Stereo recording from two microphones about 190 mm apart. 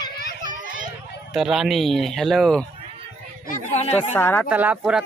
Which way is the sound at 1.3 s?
Centre (ahead or behind).